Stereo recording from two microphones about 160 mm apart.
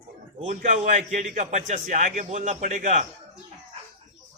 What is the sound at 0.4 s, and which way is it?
A man's voice, 50° right (ahead or behind).